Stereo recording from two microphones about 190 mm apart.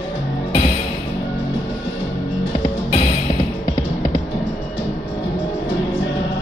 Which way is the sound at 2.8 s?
30° left (ahead or behind).